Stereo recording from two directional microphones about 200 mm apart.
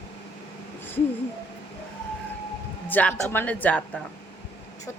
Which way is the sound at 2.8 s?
10° left (ahead or behind).